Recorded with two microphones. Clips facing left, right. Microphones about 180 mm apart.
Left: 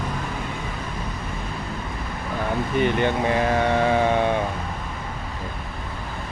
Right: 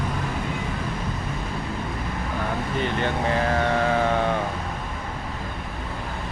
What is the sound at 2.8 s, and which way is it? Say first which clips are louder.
Speech: left 5 dB; 15° left (ahead or behind).